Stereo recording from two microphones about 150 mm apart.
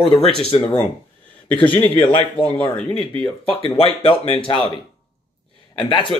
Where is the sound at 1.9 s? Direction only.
35° left (ahead or behind).